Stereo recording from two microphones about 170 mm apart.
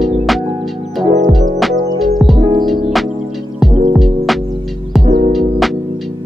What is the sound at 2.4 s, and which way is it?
Music, 25° right (ahead or behind).